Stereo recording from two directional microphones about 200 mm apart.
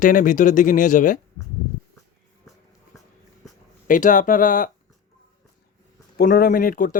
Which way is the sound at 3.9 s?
40° left (ahead or behind).